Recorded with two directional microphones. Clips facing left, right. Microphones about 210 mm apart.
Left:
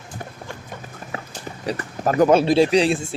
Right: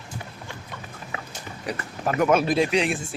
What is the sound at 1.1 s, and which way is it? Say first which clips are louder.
Speech: left 4 dB; 30° left (ahead or behind).